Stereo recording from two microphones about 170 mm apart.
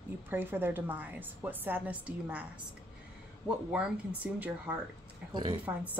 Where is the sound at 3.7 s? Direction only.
5° right (ahead or behind).